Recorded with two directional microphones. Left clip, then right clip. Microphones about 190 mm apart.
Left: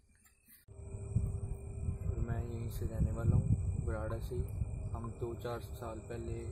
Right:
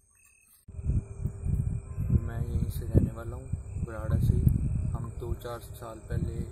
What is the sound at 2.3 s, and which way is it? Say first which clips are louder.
Speech: right 4 dB; 10° right (ahead or behind).